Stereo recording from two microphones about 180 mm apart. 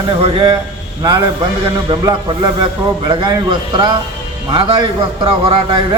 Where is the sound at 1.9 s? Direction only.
25° right (ahead or behind).